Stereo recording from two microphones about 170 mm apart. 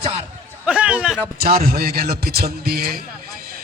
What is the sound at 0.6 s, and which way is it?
Speech, 5° right (ahead or behind).